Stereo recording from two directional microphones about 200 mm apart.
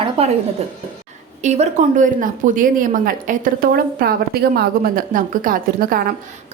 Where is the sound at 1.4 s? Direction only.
35° right (ahead or behind).